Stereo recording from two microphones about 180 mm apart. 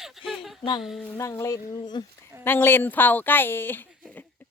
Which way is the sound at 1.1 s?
15° left (ahead or behind).